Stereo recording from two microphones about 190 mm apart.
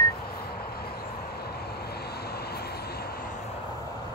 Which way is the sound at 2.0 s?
55° left (ahead or behind).